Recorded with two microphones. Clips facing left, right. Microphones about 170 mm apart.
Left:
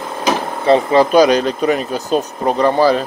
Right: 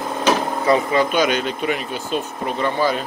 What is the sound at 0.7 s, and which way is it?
Speech, 35° left (ahead or behind).